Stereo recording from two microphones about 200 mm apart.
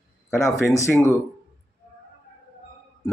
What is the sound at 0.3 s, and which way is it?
Speech, centre (ahead or behind).